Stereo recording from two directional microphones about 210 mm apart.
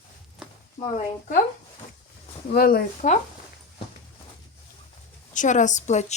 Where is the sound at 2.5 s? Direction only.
45° left (ahead or behind).